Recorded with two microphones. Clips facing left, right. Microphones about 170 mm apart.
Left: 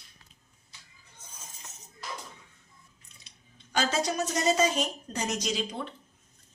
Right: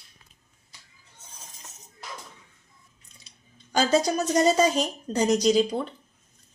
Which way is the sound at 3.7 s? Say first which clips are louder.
Right 6 dB; 35° right (ahead or behind).